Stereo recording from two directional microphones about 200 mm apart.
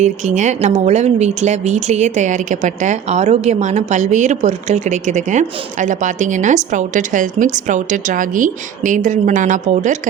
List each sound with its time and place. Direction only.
0.0 s speech: 35° right (ahead or behind)